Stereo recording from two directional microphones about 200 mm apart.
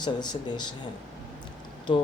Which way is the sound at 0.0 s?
20° left (ahead or behind).